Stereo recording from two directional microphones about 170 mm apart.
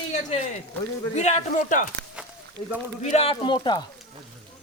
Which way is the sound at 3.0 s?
35° left (ahead or behind).